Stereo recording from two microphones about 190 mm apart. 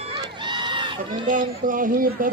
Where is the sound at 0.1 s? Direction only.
25° right (ahead or behind).